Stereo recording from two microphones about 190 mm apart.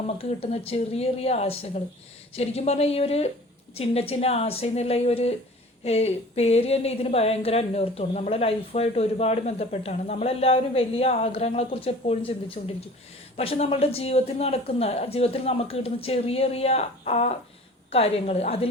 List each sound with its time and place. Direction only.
0.2 s a woman's voice: 30° left (ahead or behind)